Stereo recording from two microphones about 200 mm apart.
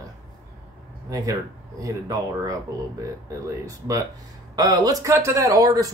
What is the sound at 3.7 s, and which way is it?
Speech, 15° right (ahead or behind).